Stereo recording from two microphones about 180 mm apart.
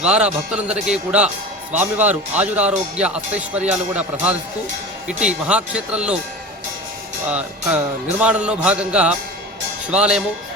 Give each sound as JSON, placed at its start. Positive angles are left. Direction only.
{"t": 0.0, "sound": "speech", "side_deg": -5}
{"t": 7.3, "sound": "speech", "side_deg": -10}